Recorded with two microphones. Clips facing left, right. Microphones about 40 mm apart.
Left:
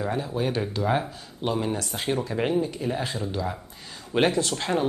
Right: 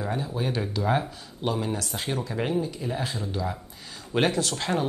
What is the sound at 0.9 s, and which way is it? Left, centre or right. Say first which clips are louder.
Speech: even; left.